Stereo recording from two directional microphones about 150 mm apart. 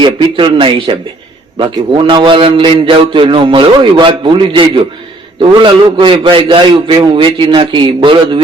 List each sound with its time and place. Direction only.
0.0 s a man's voice: 35° right (ahead or behind)